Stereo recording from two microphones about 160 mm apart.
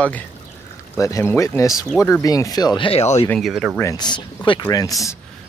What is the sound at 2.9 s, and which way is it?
Speech, 40° left (ahead or behind).